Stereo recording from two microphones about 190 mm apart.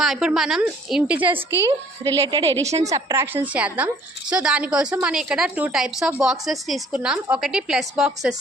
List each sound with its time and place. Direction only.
0.0 s a woman's voice: 5° right (ahead or behind)
2.1 s a woman's voice: 25° right (ahead or behind); by 8.4 s 5° right (ahead or behind)